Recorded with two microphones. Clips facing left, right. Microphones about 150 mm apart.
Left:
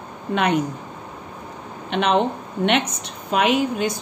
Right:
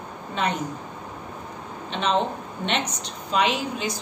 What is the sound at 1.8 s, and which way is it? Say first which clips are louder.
Speech: left 5 dB; 65° left (ahead or behind).